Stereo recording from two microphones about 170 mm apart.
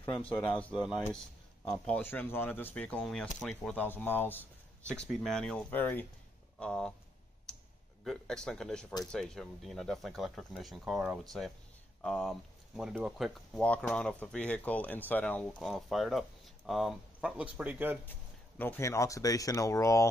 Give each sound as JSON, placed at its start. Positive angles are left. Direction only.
{"t": 0.4, "sound": "speech", "side_deg": 5}
{"t": 7.5, "sound": "computer keyboard", "side_deg": 5}
{"t": 8.0, "sound": "speech", "side_deg": 5}
{"t": 18.6, "sound": "speech", "side_deg": 15}